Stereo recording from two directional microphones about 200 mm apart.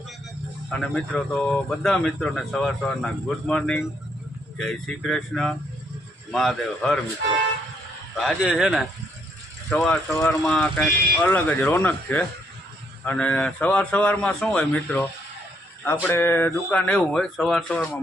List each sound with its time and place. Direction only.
0.7 s speech: 5° left (ahead or behind)
8.2 s speech: centre (ahead or behind)
16.0 s speech: 10° left (ahead or behind)